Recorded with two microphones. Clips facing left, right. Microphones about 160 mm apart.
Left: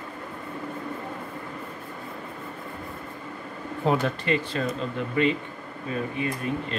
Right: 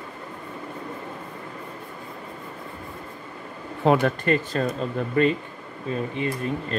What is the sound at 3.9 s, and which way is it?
Speech, 75° right (ahead or behind).